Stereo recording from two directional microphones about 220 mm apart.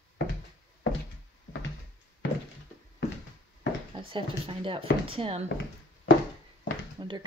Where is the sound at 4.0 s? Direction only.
25° right (ahead or behind).